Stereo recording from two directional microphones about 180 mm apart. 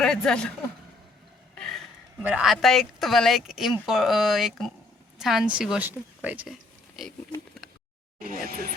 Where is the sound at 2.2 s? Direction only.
5° right (ahead or behind).